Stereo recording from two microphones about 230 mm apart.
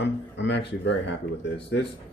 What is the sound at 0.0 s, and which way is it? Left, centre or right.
Speech, left.